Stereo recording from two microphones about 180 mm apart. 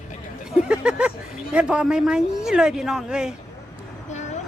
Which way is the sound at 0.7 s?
5° right (ahead or behind).